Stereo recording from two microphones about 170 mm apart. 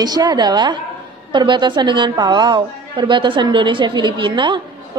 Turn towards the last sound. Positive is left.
turn(degrees=-25)  # may be behind; listen again after turning